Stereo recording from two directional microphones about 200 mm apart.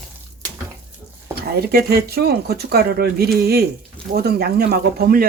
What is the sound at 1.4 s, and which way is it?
Speech, 50° right (ahead or behind).